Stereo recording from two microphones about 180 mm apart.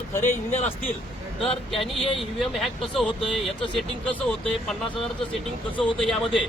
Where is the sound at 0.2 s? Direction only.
40° left (ahead or behind).